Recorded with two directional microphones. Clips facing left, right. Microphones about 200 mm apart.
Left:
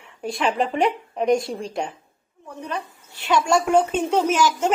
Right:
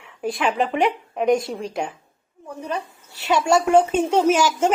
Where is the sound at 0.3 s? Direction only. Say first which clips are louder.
Right 1 dB; centre (ahead or behind).